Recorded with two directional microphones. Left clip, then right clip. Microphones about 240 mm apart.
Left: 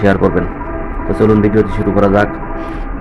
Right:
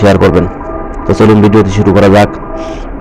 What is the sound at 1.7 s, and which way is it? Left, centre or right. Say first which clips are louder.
Speech: right 6 dB; right.